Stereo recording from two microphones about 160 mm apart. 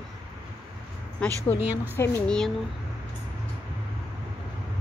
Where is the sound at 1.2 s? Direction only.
5° left (ahead or behind).